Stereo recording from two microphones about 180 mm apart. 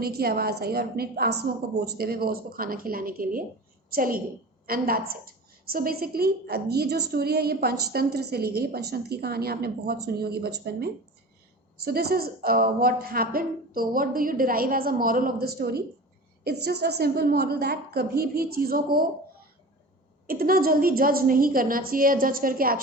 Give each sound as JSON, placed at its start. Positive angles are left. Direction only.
{"t": 0.0, "sound": "a woman's voice", "side_deg": -55}
{"t": 11.8, "sound": "a woman's voice", "side_deg": -60}
{"t": 20.2, "sound": "a woman's voice", "side_deg": -55}